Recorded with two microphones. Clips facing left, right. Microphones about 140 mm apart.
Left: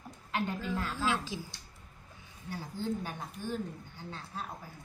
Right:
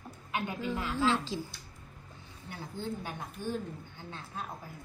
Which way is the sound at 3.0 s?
20° right (ahead or behind).